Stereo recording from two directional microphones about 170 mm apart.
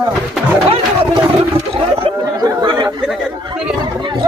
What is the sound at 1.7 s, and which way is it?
Chatter, 35° right (ahead or behind).